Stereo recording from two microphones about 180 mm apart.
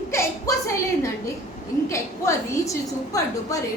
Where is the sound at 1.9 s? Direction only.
15° left (ahead or behind).